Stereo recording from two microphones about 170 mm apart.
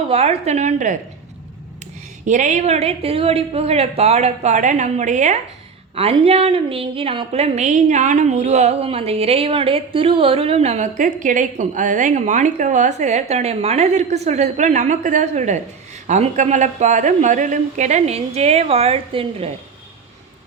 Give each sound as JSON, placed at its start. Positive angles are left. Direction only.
{"t": 0.1, "sound": "a woman's voice", "side_deg": -35}
{"t": 2.2, "sound": "a woman's voice", "side_deg": -45}